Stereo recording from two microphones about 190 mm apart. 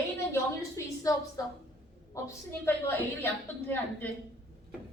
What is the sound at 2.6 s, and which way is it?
A woman's voice, 10° left (ahead or behind).